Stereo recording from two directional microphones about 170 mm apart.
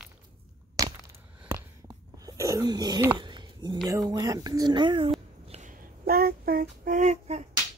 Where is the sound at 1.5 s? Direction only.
20° right (ahead or behind).